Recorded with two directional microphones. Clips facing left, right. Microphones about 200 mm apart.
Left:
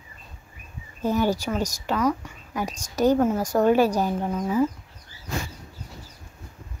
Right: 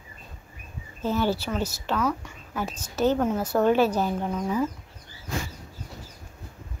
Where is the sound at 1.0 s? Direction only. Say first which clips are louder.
Left 2 dB; 15° left (ahead or behind).